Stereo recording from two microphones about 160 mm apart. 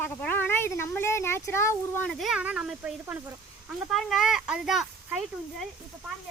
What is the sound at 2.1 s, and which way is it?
Speech, centre (ahead or behind).